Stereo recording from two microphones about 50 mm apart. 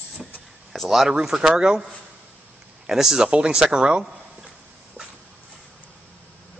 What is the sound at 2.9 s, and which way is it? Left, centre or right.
Speech, centre.